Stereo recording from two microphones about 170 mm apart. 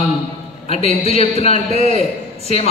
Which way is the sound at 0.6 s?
35° left (ahead or behind).